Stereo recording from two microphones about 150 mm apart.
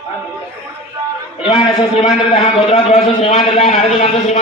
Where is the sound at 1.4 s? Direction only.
35° left (ahead or behind).